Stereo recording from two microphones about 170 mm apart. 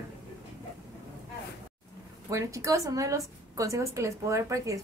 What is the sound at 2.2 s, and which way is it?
A woman's voice, 20° right (ahead or behind).